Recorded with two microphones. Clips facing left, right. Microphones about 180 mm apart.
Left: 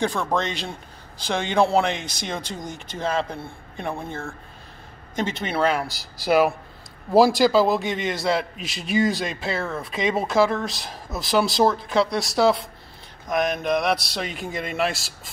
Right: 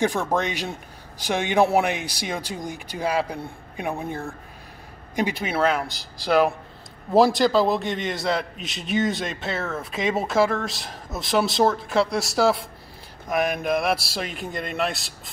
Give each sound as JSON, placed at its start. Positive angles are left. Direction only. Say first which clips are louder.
{"t": 0.0, "sound": "a man's voice", "louder": "right 1 dB", "side_deg": -15}